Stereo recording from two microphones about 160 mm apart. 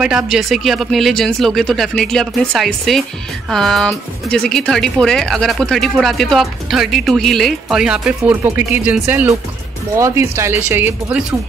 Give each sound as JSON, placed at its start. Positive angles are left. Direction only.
{"t": 0.0, "sound": "speech", "side_deg": 0}